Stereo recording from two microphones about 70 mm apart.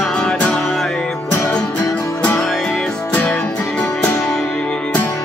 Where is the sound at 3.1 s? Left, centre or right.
Left.